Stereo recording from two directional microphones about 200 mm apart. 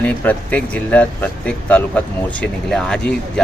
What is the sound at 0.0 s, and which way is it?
A man's voice, 10° left (ahead or behind).